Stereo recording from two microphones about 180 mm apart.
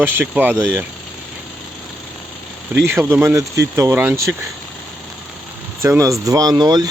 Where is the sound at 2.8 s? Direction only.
15° right (ahead or behind).